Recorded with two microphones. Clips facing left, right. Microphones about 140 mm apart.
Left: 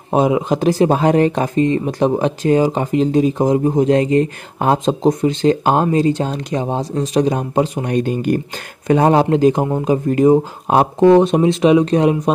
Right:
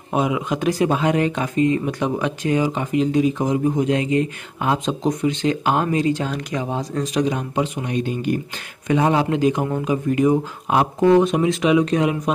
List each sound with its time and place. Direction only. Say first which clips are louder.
0.1 s speech: left 6 dB; 35° left (ahead or behind)